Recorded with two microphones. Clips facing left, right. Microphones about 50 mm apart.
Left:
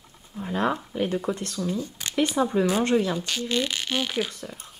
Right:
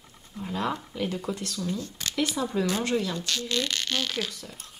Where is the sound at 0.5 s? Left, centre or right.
Left.